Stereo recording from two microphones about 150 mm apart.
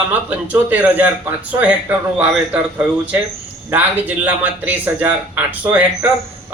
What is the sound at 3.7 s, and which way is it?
Speech, 10° right (ahead or behind).